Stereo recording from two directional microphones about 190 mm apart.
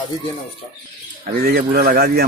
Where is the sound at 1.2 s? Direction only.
50° right (ahead or behind).